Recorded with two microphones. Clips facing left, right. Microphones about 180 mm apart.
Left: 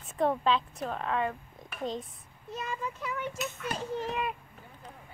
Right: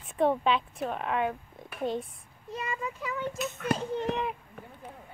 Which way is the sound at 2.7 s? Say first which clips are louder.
Right 1 dB; centre (ahead or behind).